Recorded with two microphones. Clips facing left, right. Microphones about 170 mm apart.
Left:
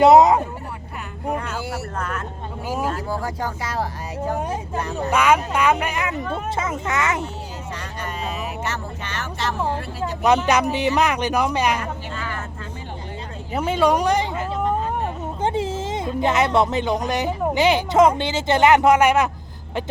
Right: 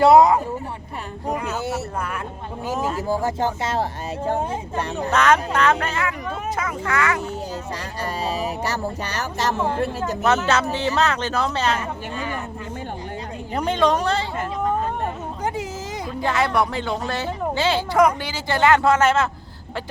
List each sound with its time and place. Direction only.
0.0 s speech: 20° left (ahead or behind)
1.5 s a sound: 20° right (ahead or behind)
2.0 s a sound: 10° right (ahead or behind)
3.1 s speech: 25° right (ahead or behind)
5.1 s a man's voice: 10° left (ahead or behind)
8.0 s speech: 35° right (ahead or behind)
10.2 s a man's voice: 15° left (ahead or behind)
12.1 s speech: 15° right (ahead or behind)
13.5 s a man's voice: 5° left (ahead or behind)
15.4 s speech: 30° left (ahead or behind)